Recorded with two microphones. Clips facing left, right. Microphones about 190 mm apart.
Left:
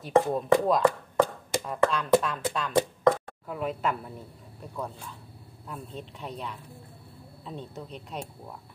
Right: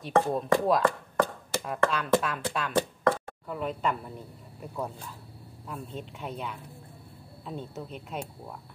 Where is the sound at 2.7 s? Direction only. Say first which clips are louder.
Left 4 dB; 15° left (ahead or behind).